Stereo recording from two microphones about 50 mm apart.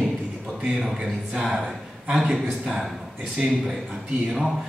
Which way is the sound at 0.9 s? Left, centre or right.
Centre.